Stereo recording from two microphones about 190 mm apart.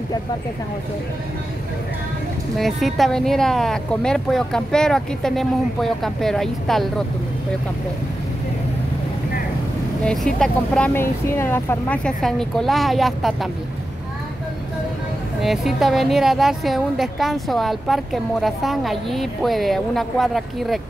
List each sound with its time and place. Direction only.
2.5 s a woman's voice: centre (ahead or behind)
10.0 s a woman's voice: 5° left (ahead or behind)
15.4 s a woman's voice: centre (ahead or behind)